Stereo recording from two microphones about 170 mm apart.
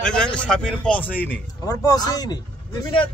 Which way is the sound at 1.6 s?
20° left (ahead or behind).